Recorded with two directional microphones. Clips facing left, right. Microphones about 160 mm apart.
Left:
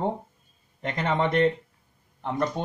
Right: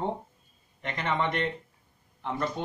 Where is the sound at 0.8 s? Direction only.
40° left (ahead or behind).